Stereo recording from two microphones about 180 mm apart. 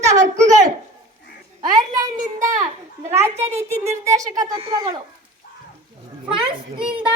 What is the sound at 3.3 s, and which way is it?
Speech, 35° right (ahead or behind).